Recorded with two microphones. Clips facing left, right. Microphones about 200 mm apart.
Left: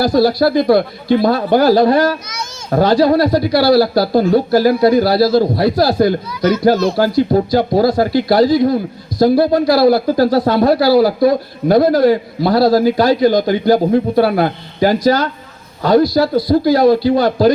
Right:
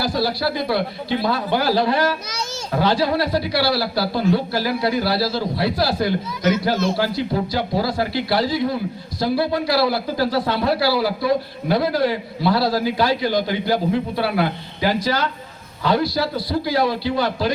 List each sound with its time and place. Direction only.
0.0 s speech: 45° left (ahead or behind)